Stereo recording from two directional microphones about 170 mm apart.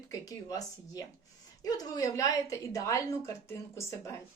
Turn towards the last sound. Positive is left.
turn(degrees=15)  # may be behind; listen again after turning